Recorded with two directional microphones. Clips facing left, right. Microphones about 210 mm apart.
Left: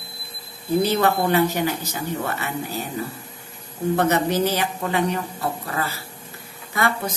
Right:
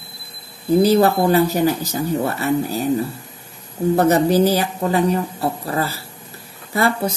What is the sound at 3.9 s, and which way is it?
Speech, 35° right (ahead or behind).